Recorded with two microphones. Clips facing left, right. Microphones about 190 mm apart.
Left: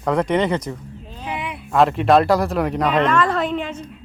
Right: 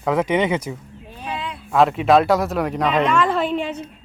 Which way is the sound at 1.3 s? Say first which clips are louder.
Left 1 dB; 15° left (ahead or behind).